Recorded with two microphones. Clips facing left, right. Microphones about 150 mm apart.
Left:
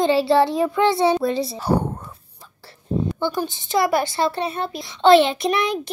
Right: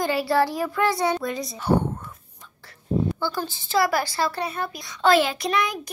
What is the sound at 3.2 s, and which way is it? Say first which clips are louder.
A woman's voice: left 4 dB; 20° left (ahead or behind).